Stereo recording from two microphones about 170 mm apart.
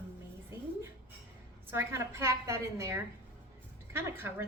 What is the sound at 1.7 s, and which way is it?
A woman's voice, 15° right (ahead or behind).